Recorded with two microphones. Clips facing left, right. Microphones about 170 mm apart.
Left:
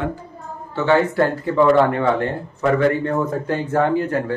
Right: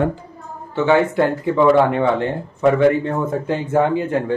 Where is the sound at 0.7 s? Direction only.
15° right (ahead or behind).